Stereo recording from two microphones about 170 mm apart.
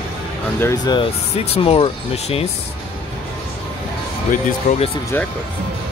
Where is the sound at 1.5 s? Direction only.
35° left (ahead or behind).